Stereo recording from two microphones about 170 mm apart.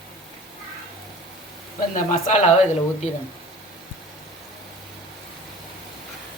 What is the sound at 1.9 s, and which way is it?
Speech, 45° left (ahead or behind).